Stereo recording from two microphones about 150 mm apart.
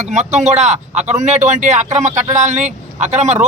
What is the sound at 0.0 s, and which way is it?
Speech, 50° right (ahead or behind).